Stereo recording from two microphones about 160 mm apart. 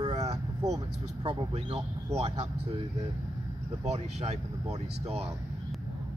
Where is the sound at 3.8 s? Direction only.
45° right (ahead or behind).